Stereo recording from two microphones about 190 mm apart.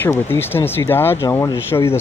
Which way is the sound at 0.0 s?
10° left (ahead or behind).